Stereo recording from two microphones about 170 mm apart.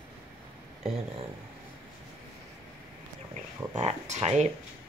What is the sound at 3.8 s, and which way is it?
Speech, 40° right (ahead or behind).